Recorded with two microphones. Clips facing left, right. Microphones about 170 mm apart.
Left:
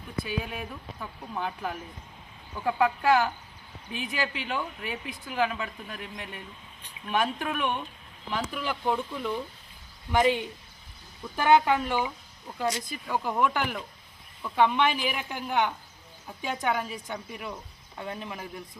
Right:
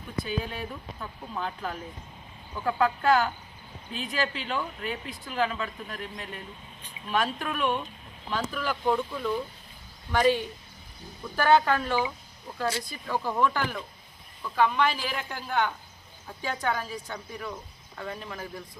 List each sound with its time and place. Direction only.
0.2 s speech: 5° left (ahead or behind)